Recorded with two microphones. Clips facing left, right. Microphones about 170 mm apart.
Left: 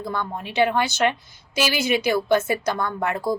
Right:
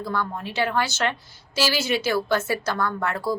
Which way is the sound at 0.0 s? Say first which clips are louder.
Even; 20° left (ahead or behind).